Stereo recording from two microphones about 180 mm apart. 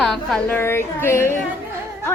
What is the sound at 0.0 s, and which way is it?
A woman's voice, centre (ahead or behind).